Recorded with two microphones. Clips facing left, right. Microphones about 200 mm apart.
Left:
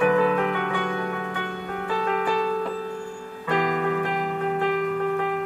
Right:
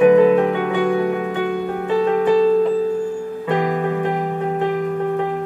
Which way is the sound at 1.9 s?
20° right (ahead or behind).